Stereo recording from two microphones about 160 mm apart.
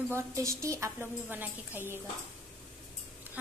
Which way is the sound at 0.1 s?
20° right (ahead or behind).